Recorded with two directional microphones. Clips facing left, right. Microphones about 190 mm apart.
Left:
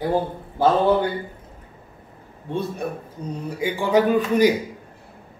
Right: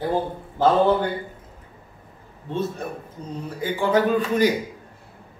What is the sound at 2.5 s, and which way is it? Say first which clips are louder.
A man's voice: left 1 dB; 15° left (ahead or behind).